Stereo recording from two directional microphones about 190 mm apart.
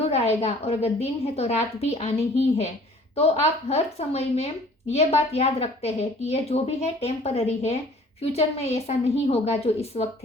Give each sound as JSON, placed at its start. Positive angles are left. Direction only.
{"t": 0.0, "sound": "speech", "side_deg": 35}